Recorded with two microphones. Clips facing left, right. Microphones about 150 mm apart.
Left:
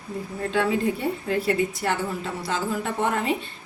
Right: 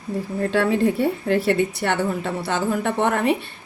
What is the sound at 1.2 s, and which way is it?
A woman's voice, 75° right (ahead or behind).